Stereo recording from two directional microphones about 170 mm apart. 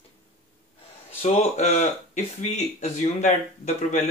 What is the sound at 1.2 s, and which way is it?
Speech, 40° left (ahead or behind).